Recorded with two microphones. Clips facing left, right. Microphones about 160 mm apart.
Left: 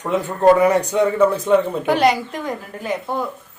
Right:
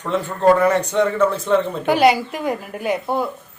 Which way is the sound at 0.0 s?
15° left (ahead or behind).